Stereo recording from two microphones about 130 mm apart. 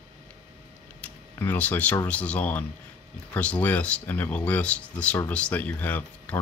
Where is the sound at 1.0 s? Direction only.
15° left (ahead or behind).